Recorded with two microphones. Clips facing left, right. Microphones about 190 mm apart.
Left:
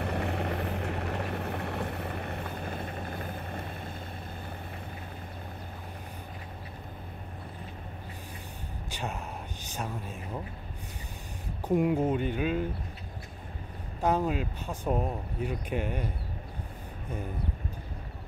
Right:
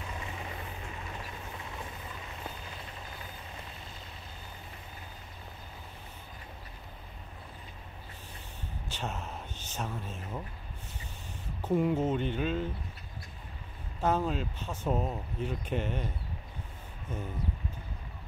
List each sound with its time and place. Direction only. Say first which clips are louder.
0.0 s vehicle: left 10 dB; 65° left (ahead or behind)
8.9 s a sound: left 2 dB; 10° left (ahead or behind)
11.6 s speech: left 2 dB; 15° left (ahead or behind)
14.0 s speech: left 2 dB; 10° left (ahead or behind)